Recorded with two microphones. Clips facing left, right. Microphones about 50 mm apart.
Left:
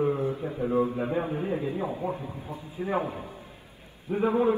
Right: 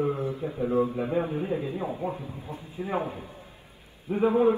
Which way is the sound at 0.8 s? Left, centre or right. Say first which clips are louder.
Even; left.